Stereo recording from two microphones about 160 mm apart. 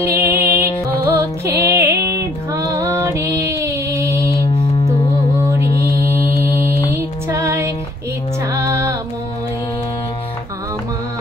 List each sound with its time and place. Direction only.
0.0 s music: 15° right (ahead or behind)
2.5 s female singing: 20° right (ahead or behind)
6.9 s music: 20° right (ahead or behind)